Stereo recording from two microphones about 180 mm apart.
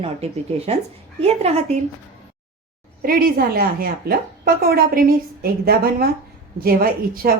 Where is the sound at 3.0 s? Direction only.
55° right (ahead or behind).